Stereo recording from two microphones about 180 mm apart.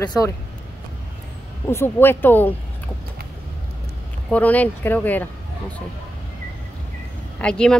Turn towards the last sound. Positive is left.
turn(degrees=5)  # may be behind; listen again after turning